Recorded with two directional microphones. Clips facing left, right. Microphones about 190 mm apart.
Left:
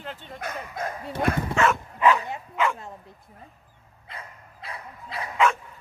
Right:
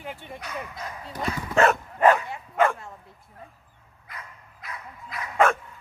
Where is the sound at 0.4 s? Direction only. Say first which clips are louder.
Left 3 dB; 50° left (ahead or behind).